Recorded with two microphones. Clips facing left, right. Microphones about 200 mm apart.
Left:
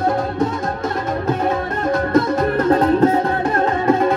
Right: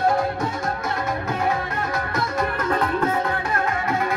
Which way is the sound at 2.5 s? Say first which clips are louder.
Left 11 dB; 40° left (ahead or behind).